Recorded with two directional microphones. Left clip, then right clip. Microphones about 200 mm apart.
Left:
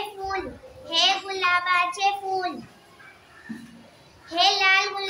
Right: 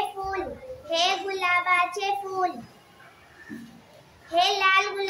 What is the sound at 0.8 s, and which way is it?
A child's voice, 10° right (ahead or behind).